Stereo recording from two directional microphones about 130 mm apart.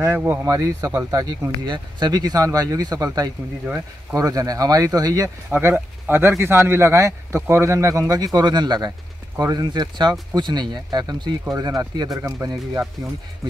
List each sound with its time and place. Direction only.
0.0 s speech: 15° right (ahead or behind)
0.5 s speech: 25° right (ahead or behind)
5.5 s speech: 15° right (ahead or behind)